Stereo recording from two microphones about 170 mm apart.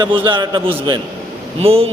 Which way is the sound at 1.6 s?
35° right (ahead or behind).